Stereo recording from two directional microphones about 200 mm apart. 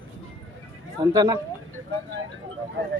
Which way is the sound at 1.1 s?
20° right (ahead or behind).